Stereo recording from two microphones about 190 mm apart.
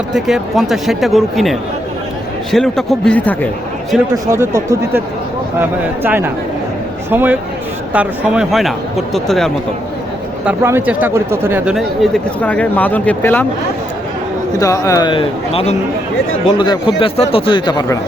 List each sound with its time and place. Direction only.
0.1 s speech: centre (ahead or behind)
4.1 s speech: 15° right (ahead or behind); by 9.5 s centre (ahead or behind)
10.4 s speech: 15° right (ahead or behind); by 13.4 s 10° left (ahead or behind)
14.6 s a man's voice: 20° left (ahead or behind)